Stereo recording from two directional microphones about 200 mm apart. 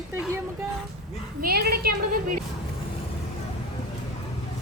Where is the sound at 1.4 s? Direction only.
50° right (ahead or behind).